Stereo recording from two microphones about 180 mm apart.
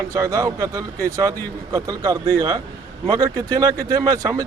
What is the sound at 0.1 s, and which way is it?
Speech, 15° right (ahead or behind).